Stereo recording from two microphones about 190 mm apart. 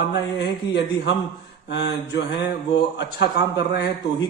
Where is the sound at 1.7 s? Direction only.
60° left (ahead or behind).